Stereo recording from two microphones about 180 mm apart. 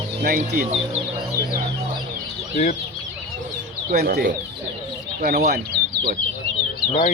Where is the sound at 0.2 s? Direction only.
55° right (ahead or behind).